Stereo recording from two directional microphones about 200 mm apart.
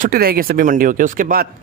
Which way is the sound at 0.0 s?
50° right (ahead or behind).